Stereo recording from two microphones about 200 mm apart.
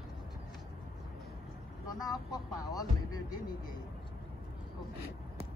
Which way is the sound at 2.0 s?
20° left (ahead or behind).